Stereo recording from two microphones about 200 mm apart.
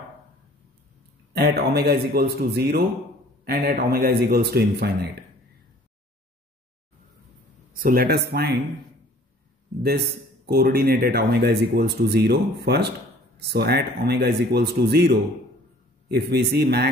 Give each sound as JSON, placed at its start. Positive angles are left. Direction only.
{"t": 1.3, "sound": "speech", "side_deg": -55}
{"t": 7.7, "sound": "speech", "side_deg": -45}
{"t": 9.8, "sound": "speech", "side_deg": -50}